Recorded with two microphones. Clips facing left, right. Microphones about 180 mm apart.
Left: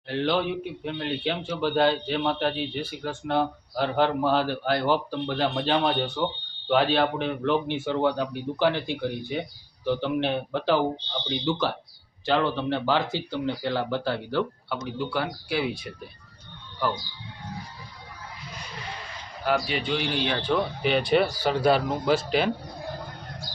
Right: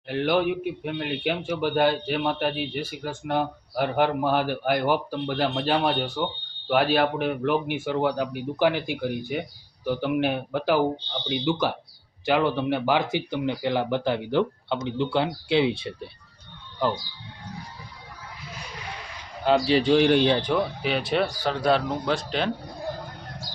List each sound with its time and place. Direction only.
0.1 s a man's voice: 10° right (ahead or behind)
19.5 s a man's voice: 25° right (ahead or behind)
19.7 s a man's voice: 40° right (ahead or behind)
20.5 s speech: 5° right (ahead or behind)